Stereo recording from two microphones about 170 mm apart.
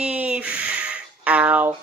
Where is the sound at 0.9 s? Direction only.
5° right (ahead or behind).